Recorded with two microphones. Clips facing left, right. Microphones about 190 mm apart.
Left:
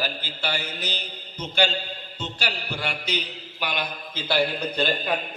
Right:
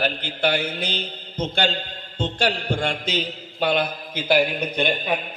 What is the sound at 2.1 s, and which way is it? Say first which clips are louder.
A man's voice: right 9 dB; 55° right (ahead or behind).